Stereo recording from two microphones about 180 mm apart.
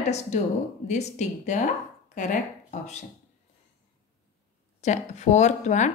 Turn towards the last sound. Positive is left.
turn(degrees=40)  # may be behind; listen again after turning